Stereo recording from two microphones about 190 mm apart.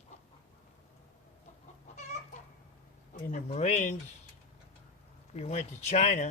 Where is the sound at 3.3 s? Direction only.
35° left (ahead or behind).